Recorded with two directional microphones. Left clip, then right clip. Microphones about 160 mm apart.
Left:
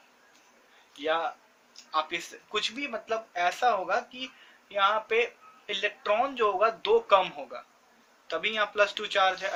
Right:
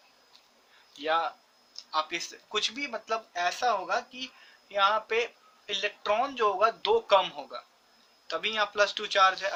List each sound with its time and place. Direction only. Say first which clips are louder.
1.0 s speech: right 1 dB; 40° right (ahead or behind)